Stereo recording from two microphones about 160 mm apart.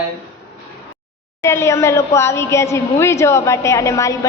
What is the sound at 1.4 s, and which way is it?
A woman's voice, 15° left (ahead or behind).